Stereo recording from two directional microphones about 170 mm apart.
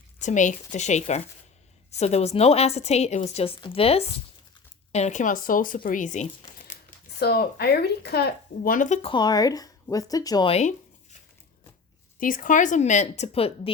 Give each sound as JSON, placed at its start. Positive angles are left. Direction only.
{"t": 0.2, "sound": "speech", "side_deg": 45}
{"t": 7.2, "sound": "speech", "side_deg": 70}
{"t": 10.5, "sound": "speech", "side_deg": 45}
{"t": 12.2, "sound": "speech", "side_deg": 50}